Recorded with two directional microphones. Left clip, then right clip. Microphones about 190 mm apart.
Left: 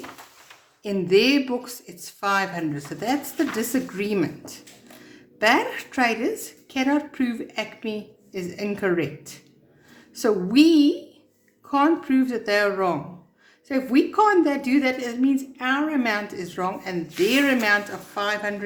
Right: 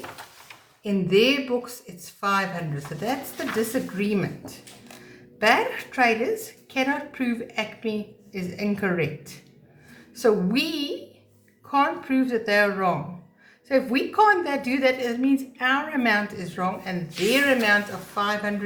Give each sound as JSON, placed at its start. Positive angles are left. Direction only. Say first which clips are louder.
{"t": 0.8, "sound": "a woman's voice", "louder": "left 1 dB", "side_deg": 40}